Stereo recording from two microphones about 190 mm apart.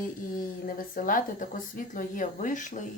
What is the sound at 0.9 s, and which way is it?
Speech, 45° left (ahead or behind).